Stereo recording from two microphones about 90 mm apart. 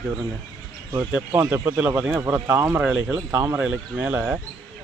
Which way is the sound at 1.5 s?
15° right (ahead or behind).